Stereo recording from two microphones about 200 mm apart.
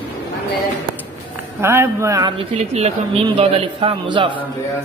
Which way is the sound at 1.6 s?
10° right (ahead or behind).